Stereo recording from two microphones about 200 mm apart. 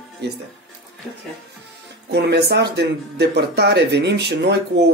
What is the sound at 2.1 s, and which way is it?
Speech, 55° right (ahead or behind).